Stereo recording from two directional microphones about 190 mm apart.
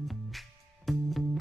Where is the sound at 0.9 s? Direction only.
Centre (ahead or behind).